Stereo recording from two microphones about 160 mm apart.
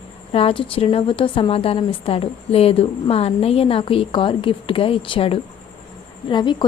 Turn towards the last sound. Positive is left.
turn(degrees=30)  # may be behind; listen again after turning